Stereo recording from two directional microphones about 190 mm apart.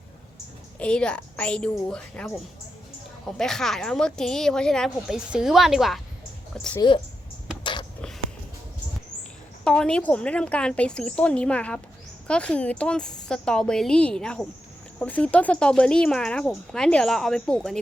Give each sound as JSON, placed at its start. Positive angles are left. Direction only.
{"t": 0.8, "sound": "speech", "side_deg": 5}
{"t": 7.6, "sound": "a sound", "side_deg": 25}
{"t": 9.6, "sound": "speech", "side_deg": 5}